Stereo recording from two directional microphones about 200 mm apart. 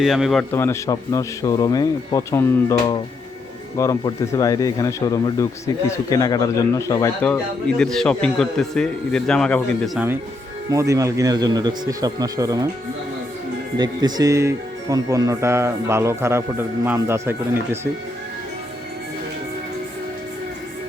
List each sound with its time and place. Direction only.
0.0 s speech: centre (ahead or behind)
0.5 s speech: 15° left (ahead or behind); by 10.2 s 5° right (ahead or behind)
10.7 s speech: 15° right (ahead or behind)
13.7 s speech: 20° right (ahead or behind)